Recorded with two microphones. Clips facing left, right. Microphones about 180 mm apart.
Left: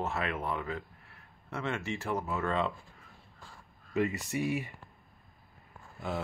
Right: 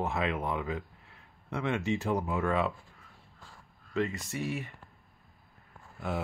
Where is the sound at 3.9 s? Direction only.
15° left (ahead or behind).